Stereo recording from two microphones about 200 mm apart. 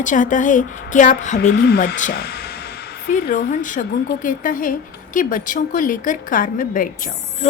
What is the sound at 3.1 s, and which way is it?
A woman's voice, 40° left (ahead or behind).